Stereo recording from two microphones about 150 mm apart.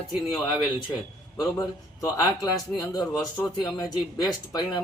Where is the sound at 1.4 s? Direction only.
25° left (ahead or behind).